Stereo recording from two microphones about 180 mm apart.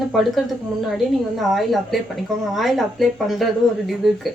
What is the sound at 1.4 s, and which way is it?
A woman's voice, centre (ahead or behind).